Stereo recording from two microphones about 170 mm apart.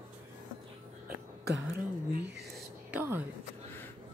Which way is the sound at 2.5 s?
10° right (ahead or behind).